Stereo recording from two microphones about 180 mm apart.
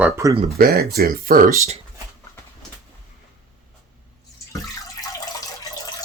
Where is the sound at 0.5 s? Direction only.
55° right (ahead or behind).